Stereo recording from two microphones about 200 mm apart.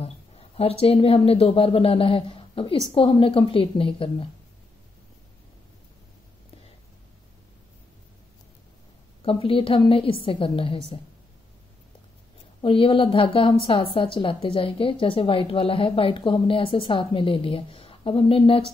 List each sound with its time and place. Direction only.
0.0 s a woman's voice: 30° left (ahead or behind)
9.2 s a woman's voice: 30° left (ahead or behind)
12.6 s a woman's voice: 25° left (ahead or behind)